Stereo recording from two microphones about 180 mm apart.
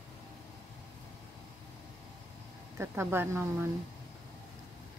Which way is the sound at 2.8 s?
15° right (ahead or behind).